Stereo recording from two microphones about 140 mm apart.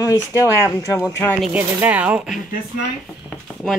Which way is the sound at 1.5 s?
10° right (ahead or behind).